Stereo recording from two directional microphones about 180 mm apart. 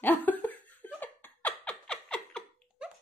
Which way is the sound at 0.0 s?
10° left (ahead or behind).